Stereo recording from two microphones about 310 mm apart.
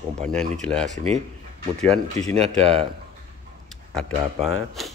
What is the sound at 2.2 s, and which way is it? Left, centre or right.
Speech, centre.